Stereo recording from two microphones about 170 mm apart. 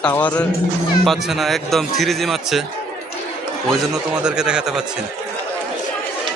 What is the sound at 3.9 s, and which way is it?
Speech, 5° right (ahead or behind).